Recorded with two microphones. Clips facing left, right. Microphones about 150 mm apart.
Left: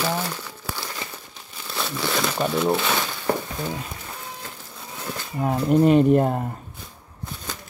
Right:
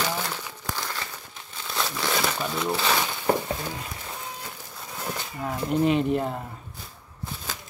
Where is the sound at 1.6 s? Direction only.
Centre (ahead or behind).